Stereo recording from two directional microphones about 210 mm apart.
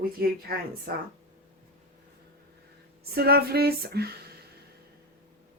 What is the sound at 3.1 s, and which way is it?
Speech, 45° right (ahead or behind).